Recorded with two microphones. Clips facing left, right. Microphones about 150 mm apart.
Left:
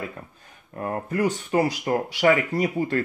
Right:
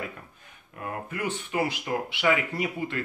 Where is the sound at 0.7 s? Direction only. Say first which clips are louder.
Left 8 dB; 40° left (ahead or behind).